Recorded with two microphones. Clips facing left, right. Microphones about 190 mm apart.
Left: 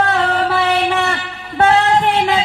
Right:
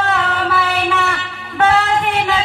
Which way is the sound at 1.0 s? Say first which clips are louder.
Left 1 dB; 35° left (ahead or behind).